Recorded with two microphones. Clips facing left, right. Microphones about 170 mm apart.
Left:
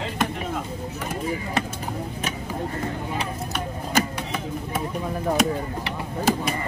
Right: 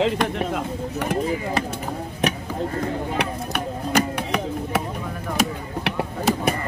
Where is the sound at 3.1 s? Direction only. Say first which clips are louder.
Right 3 dB; 70° right (ahead or behind).